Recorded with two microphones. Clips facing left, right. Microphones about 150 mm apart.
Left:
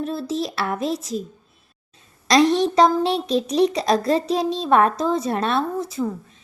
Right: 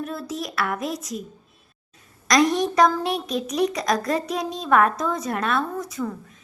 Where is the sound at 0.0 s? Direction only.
30° left (ahead or behind).